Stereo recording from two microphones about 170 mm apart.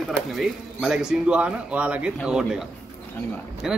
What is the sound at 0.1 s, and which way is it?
Speech, centre (ahead or behind).